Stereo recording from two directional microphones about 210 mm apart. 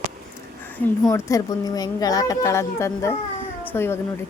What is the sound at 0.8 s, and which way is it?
A woman's voice, 10° left (ahead or behind).